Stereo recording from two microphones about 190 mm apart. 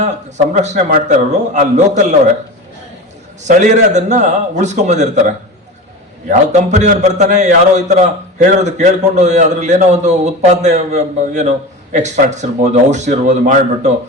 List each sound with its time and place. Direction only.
0.0 s a man's voice: 40° right (ahead or behind)
3.4 s a man's voice: 40° right (ahead or behind)
6.2 s a man's voice: 40° right (ahead or behind)